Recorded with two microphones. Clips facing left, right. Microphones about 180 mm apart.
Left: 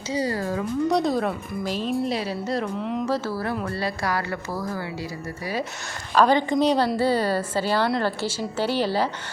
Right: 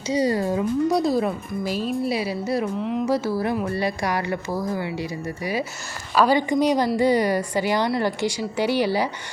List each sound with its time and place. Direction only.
0.1 s speech: 20° right (ahead or behind)
0.9 s speech: 5° right (ahead or behind)
2.1 s a woman's voice: 10° right (ahead or behind)
6.1 s a woman's voice: 10° right (ahead or behind)